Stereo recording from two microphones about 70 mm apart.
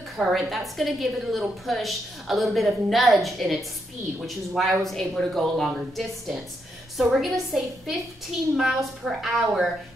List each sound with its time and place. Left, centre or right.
0.2 s a woman's voice: centre